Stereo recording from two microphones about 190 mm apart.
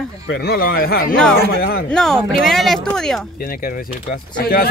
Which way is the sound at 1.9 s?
5° left (ahead or behind).